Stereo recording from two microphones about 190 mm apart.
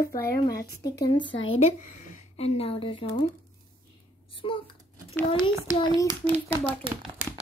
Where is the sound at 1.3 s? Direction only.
90° left.